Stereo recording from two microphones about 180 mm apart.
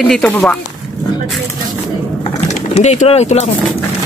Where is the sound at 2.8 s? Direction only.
35° left (ahead or behind).